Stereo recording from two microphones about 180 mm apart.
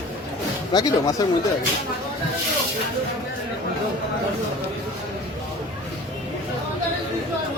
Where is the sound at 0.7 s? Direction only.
20° left (ahead or behind).